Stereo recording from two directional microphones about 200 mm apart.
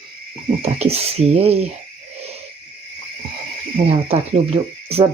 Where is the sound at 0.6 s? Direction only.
30° right (ahead or behind).